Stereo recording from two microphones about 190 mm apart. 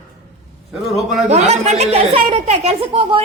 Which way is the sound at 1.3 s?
35° right (ahead or behind).